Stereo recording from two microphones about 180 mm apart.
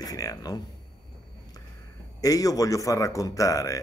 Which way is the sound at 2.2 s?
20° left (ahead or behind).